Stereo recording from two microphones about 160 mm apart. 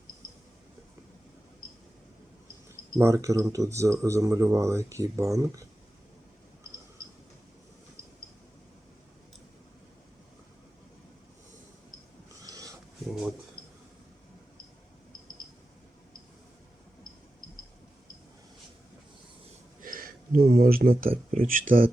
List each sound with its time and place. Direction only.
3.0 s speech: 20° right (ahead or behind)
12.4 s a sound: 20° right (ahead or behind)
13.1 s speech: centre (ahead or behind)
19.8 s speech: 60° right (ahead or behind)